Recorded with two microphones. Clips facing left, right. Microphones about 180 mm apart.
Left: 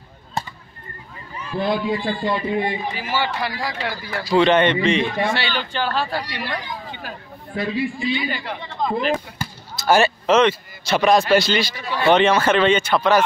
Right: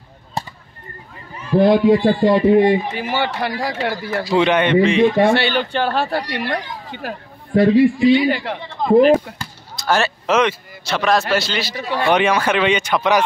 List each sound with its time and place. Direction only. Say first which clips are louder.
1.6 s a man's voice: right 9 dB; 70° right (ahead or behind)
2.0 s a man's voice: right 9 dB; 40° right (ahead or behind)
3.0 s speech: right 3 dB; 60° right (ahead or behind)
4.2 s speech: even; 25° right (ahead or behind)
4.5 s speech: even; 10° right (ahead or behind)
5.1 s a man's voice: right 8 dB; 50° right (ahead or behind); by 8.5 s 75° right (ahead or behind)
8.9 s speech: right 13 dB; 45° right (ahead or behind)
9.4 s speech: left 2 dB; 5° left (ahead or behind)
11.7 s speech: right 2 dB; 50° right (ahead or behind)
12.1 s speech: left 2 dB; 10° right (ahead or behind)